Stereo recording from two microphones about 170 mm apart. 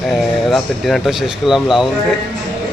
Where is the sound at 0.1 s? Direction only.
Centre (ahead or behind).